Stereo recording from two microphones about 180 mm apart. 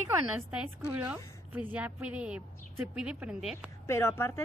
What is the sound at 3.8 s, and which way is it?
Speech, 15° left (ahead or behind).